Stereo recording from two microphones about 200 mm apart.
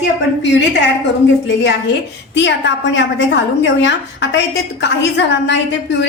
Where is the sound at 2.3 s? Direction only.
65° left (ahead or behind).